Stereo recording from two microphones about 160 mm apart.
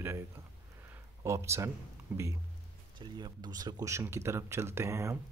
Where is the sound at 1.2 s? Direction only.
15° right (ahead or behind).